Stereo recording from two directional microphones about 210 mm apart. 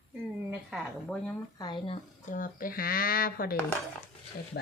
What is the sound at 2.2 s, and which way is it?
Speech, 40° left (ahead or behind).